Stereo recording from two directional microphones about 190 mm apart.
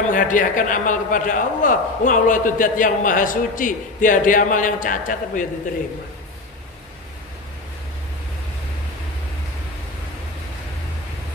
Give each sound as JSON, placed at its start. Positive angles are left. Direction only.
{"t": 0.1, "sound": "a man's voice", "side_deg": 45}